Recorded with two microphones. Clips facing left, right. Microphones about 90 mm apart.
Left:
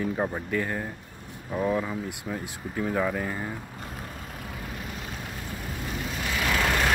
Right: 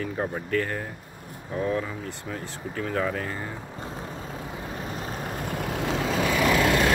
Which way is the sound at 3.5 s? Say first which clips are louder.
Right 2 dB; 25° right (ahead or behind).